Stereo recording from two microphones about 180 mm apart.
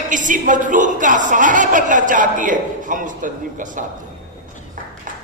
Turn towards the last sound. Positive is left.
turn(degrees=-45)  # may be behind; listen again after turning